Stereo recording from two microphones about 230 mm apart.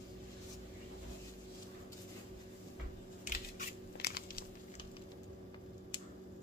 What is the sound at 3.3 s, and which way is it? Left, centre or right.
Crushing, left.